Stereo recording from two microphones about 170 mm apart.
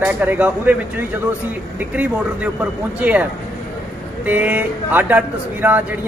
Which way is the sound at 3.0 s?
10° right (ahead or behind).